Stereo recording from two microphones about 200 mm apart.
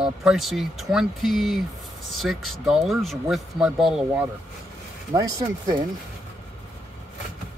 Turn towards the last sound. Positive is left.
turn(degrees=-15)  # may be behind; listen again after turning